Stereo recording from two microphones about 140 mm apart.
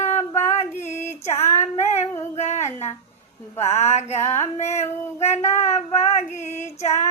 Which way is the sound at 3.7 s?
50° left (ahead or behind).